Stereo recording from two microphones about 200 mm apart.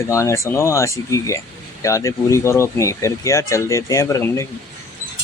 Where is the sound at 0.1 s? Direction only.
15° left (ahead or behind).